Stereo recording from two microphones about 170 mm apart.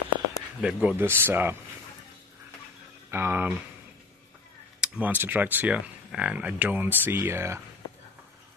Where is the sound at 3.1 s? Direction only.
10° right (ahead or behind).